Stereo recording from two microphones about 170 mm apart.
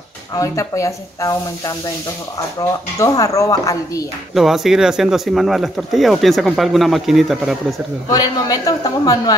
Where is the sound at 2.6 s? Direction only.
20° left (ahead or behind).